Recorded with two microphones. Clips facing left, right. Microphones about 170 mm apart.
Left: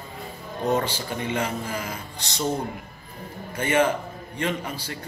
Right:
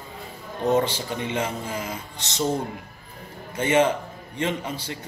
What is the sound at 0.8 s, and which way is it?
A man's voice, 20° right (ahead or behind).